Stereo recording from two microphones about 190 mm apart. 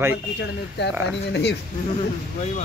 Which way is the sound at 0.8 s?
65° left (ahead or behind).